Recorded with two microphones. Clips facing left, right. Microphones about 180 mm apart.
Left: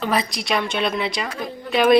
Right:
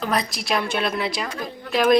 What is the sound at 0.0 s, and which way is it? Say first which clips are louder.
A woman's voice: left 2 dB; centre (ahead or behind).